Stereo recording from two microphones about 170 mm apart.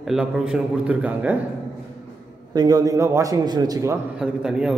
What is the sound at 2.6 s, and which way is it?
A man's voice, 20° right (ahead or behind).